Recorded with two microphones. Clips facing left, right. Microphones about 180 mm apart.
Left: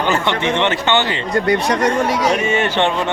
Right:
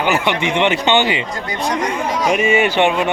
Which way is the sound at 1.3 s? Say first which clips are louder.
Left 6 dB; 70° left (ahead or behind).